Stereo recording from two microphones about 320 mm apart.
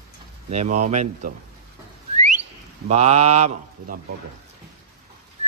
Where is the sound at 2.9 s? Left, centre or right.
Centre.